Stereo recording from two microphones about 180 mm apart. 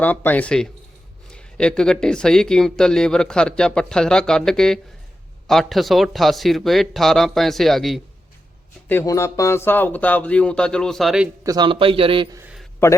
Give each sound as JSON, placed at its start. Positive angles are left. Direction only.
{"t": 0.0, "sound": "speech", "side_deg": 10}
{"t": 8.9, "sound": "speech", "side_deg": 15}
{"t": 11.4, "sound": "a man's voice", "side_deg": -25}
{"t": 12.4, "sound": "a sound", "side_deg": -5}